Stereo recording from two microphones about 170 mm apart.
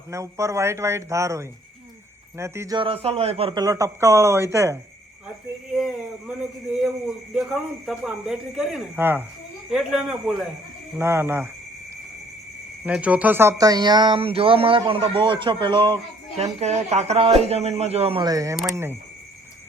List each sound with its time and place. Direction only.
0.1 s speech: 15° right (ahead or behind)
2.7 s speech: 30° right (ahead or behind); by 4.8 s 15° right (ahead or behind)
5.7 s a sound: 5° right (ahead or behind)
7.3 s speech: centre (ahead or behind)
12.8 s speech: 10° right (ahead or behind); by 16.0 s 30° right (ahead or behind)
16.4 s speech: 40° right (ahead or behind); by 18.9 s 15° right (ahead or behind)